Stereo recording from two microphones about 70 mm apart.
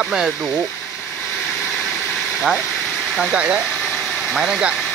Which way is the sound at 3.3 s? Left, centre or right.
Centre.